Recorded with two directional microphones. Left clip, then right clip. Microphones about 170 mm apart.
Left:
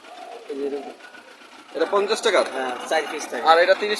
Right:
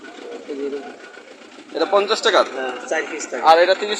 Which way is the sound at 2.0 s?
Centre (ahead or behind).